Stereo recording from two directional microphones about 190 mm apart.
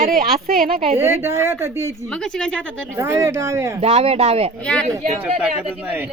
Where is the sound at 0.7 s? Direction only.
30° right (ahead or behind).